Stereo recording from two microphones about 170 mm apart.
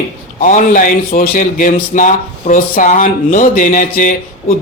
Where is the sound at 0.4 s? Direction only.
50° left (ahead or behind).